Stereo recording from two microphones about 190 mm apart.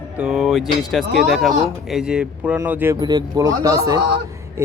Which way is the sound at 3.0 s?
20° right (ahead or behind).